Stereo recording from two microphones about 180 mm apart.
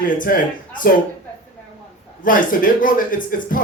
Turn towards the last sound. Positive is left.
turn(degrees=50)  # may be behind; listen again after turning